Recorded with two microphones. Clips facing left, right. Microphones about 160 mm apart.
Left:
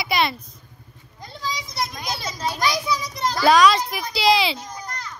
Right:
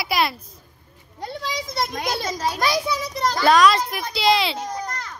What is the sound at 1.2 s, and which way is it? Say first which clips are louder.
Children playing: right 3 dB; 65° right (ahead or behind).